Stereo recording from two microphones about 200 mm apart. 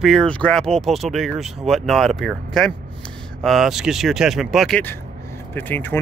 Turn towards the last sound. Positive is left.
turn(degrees=10)  # may be behind; listen again after turning